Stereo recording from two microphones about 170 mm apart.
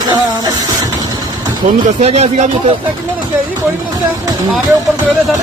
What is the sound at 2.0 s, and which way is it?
Speech, 40° right (ahead or behind).